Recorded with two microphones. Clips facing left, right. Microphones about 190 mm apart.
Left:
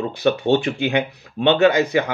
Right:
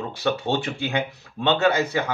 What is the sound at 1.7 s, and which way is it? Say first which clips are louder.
Speech: left 4 dB; 15° left (ahead or behind).